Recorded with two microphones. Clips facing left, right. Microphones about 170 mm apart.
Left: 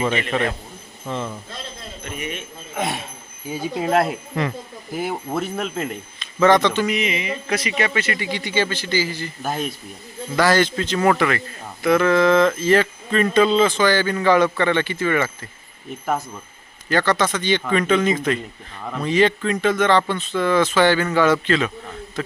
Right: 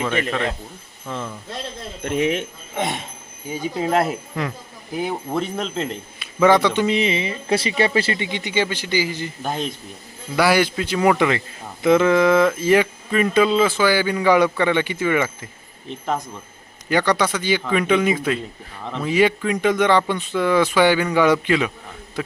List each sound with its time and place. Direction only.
0.3 s speech: 5° left (ahead or behind)
2.0 s speech: 90° right
2.7 s speech: centre (ahead or behind)
6.1 s speech: 10° right (ahead or behind)
6.8 s speech: 30° right (ahead or behind)
9.4 s speech: 5° left (ahead or behind)
10.3 s a man's voice: 10° right (ahead or behind)
15.9 s speech: 5° left (ahead or behind)
16.9 s a man's voice: 15° right (ahead or behind)
18.9 s speech: 5° left (ahead or behind)
19.1 s a man's voice: 10° right (ahead or behind)